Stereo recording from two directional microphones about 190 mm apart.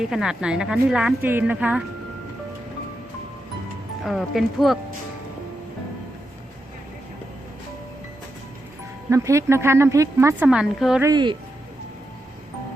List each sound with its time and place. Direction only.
0.0 s a woman's voice: 5° right (ahead or behind)
4.0 s a woman's voice: centre (ahead or behind)
9.0 s a woman's voice: 15° right (ahead or behind)
11.0 s speech: 20° right (ahead or behind)